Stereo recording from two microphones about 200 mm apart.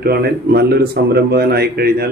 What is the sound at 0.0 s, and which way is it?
Speech, 50° right (ahead or behind).